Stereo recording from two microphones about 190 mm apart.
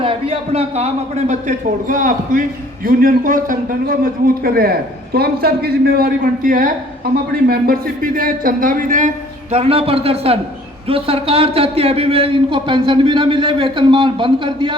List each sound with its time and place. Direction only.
0.0 s a man's voice: 30° right (ahead or behind)